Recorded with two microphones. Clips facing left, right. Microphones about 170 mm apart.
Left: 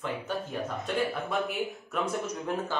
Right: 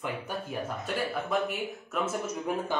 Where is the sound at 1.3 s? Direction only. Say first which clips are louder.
Right 1 dB; centre (ahead or behind).